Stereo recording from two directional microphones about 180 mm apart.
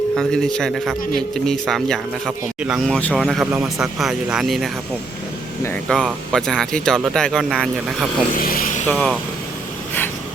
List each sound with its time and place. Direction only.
0.2 s speech: centre (ahead or behind)
5.9 s speech: 5° left (ahead or behind)
8.4 s speech: 50° left (ahead or behind)
8.9 s speech: 5° left (ahead or behind)